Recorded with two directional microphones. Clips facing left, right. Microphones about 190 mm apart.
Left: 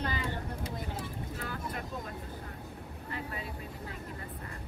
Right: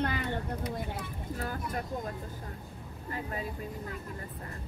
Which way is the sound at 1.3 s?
40° right (ahead or behind).